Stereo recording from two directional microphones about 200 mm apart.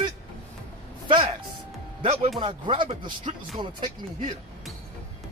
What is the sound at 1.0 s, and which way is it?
Speech, 25° right (ahead or behind).